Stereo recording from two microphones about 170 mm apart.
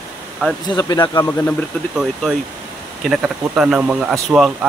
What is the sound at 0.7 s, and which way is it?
Speech, 25° left (ahead or behind).